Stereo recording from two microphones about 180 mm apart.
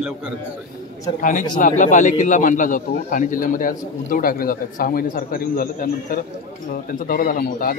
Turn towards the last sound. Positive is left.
turn(degrees=50)  # may be behind; listen again after turning